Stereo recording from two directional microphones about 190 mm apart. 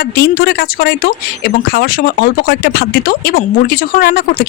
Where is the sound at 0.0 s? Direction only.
55° left (ahead or behind).